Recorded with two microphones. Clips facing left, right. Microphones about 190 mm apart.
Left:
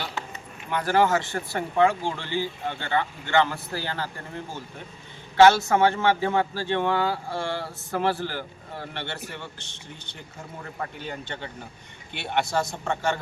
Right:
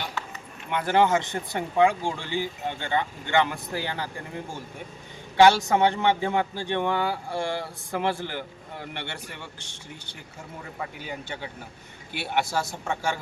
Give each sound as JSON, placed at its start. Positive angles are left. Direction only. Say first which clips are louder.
{"t": 0.9, "sound": "speech", "louder": "even", "side_deg": -20}
{"t": 5.4, "sound": "speech", "louder": "left 1 dB", "side_deg": -15}